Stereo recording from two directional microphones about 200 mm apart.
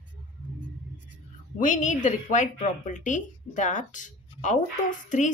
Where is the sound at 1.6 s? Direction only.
40° left (ahead or behind).